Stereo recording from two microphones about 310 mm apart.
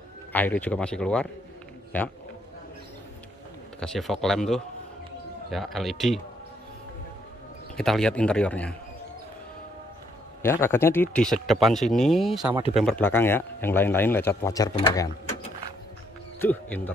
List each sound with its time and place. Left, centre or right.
0.3 s speech: centre
3.8 s speech: centre
7.7 s speech: centre
10.4 s speech: centre
16.3 s speech: centre